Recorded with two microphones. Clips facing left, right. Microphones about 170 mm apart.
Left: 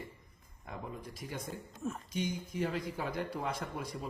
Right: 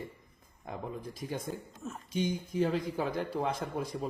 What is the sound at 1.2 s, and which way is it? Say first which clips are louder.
Speech: right 5 dB; 25° right (ahead or behind).